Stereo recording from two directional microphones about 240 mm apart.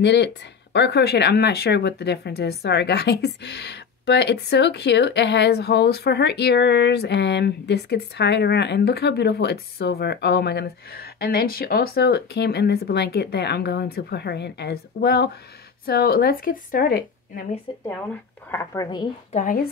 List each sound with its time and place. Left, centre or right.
0.0 s speech: left
17.7 s speech: left
19.3 s speech: left